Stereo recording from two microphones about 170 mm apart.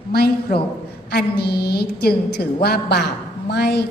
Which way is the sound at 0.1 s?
65° left (ahead or behind).